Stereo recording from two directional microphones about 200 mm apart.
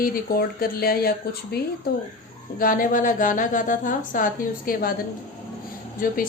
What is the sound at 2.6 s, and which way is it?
A woman's voice, 45° left (ahead or behind).